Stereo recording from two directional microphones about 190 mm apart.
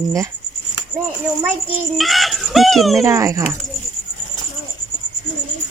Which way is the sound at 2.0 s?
Centre (ahead or behind).